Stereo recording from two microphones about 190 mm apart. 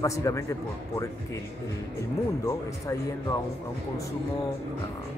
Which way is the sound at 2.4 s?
15° left (ahead or behind).